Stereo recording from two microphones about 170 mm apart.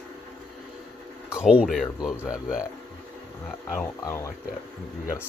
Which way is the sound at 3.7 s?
15° left (ahead or behind).